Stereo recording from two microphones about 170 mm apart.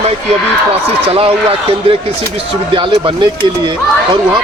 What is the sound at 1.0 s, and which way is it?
Speech, 35° right (ahead or behind).